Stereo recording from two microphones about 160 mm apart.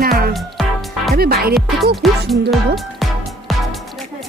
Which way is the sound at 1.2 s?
70° right (ahead or behind).